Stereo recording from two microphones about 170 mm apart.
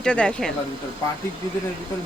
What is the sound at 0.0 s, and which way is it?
Speech, 5° left (ahead or behind).